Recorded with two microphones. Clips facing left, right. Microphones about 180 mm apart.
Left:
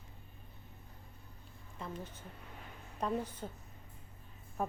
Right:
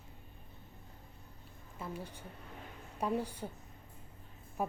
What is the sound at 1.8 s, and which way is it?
A woman's voice, 10° right (ahead or behind).